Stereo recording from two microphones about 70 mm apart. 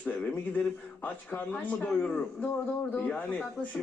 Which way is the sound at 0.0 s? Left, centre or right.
Centre.